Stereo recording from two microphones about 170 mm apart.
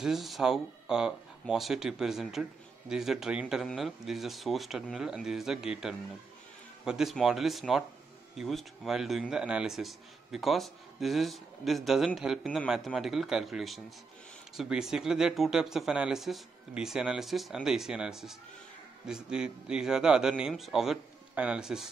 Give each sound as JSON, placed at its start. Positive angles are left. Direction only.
{"t": 0.0, "sound": "a man's voice", "side_deg": 0}